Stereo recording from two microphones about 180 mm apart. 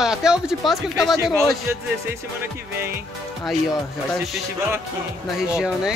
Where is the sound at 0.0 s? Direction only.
5° right (ahead or behind).